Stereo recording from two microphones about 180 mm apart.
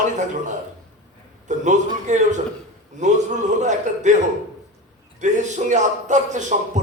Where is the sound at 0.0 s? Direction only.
40° right (ahead or behind).